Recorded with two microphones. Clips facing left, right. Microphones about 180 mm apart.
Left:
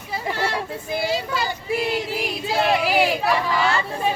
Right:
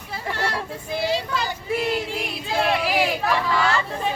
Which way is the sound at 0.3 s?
Centre (ahead or behind).